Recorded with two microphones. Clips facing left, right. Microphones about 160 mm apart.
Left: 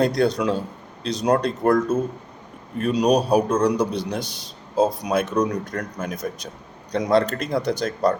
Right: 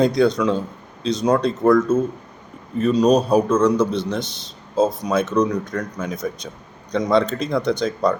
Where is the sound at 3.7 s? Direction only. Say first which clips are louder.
Right 3 dB; 10° left (ahead or behind).